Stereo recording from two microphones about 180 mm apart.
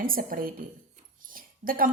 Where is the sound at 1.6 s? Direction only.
50° right (ahead or behind).